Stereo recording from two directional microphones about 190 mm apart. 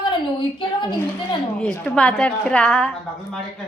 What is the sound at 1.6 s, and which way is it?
A woman's voice, 5° left (ahead or behind).